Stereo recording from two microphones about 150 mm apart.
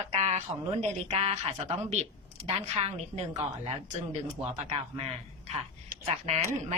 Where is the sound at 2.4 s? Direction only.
40° right (ahead or behind).